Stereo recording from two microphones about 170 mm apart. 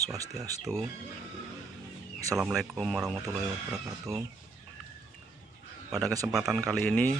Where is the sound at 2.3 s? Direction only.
Centre (ahead or behind).